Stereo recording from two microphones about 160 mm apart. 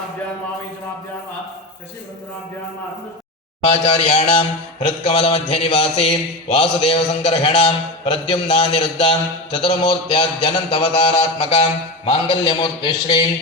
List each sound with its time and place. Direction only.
3.7 s speech: 40° left (ahead or behind)